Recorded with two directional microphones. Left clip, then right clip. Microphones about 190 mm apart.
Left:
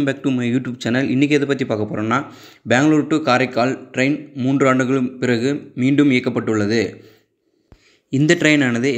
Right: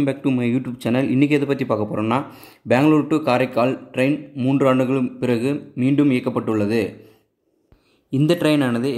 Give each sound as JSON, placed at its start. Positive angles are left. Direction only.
{"t": 0.0, "sound": "a man's voice", "side_deg": -5}
{"t": 8.3, "sound": "speech", "side_deg": 0}